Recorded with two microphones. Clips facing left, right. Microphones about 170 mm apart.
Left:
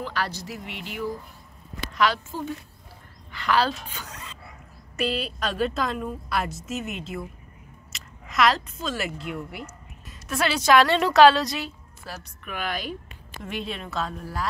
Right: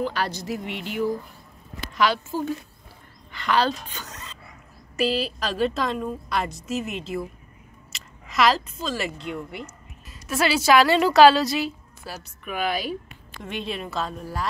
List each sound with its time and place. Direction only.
0.0 s speech: 15° right (ahead or behind)
2.0 s a woman's voice: centre (ahead or behind)
4.9 s a woman's voice: centre (ahead or behind)